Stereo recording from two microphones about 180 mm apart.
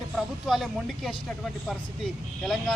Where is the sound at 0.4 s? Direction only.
Centre (ahead or behind).